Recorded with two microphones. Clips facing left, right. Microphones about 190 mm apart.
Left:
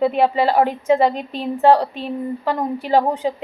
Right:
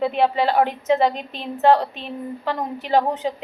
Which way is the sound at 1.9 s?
40° left (ahead or behind).